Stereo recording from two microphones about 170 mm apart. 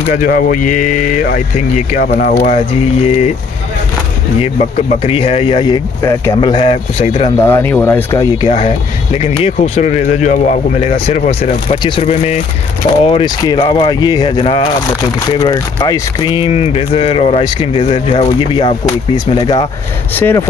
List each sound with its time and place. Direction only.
0.1 s speech: 55° left (ahead or behind)
2.4 s speech: 40° left (ahead or behind)
4.4 s speech: 35° left (ahead or behind)
7.3 s speech: 15° left (ahead or behind)
8.5 s speech: 35° left (ahead or behind)
20.2 s speech: 15° left (ahead or behind)